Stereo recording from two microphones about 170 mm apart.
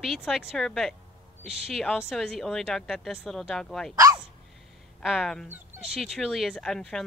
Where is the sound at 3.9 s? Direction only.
20° right (ahead or behind).